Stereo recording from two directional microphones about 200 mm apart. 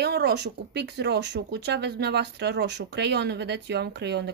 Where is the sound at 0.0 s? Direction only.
55° right (ahead or behind).